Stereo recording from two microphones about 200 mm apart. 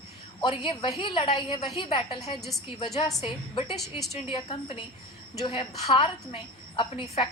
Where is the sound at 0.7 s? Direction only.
25° left (ahead or behind).